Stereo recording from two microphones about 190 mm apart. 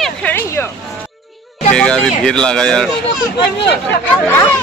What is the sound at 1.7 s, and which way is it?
Speech, 5° left (ahead or behind).